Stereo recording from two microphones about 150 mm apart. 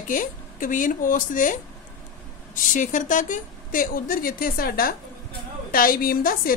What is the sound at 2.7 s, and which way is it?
A woman's voice, 60° left (ahead or behind).